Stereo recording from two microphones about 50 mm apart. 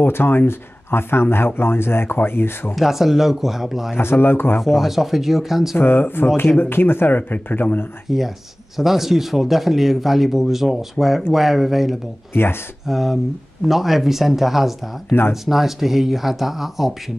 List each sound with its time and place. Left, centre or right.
0.0 s speech: left
2.7 s speech: centre
3.9 s speech: left
4.6 s speech: centre
5.8 s speech: left
8.1 s speech: centre